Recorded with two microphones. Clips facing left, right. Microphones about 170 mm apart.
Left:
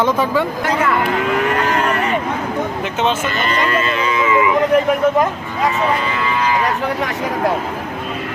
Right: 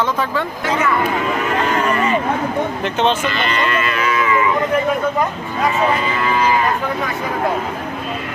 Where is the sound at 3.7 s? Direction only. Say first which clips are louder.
Left 1 dB; 30° left (ahead or behind).